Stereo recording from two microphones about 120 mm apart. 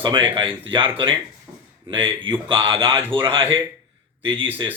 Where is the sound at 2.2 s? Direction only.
45° right (ahead or behind).